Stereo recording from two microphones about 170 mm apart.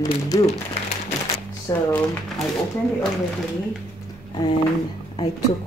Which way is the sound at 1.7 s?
20° left (ahead or behind).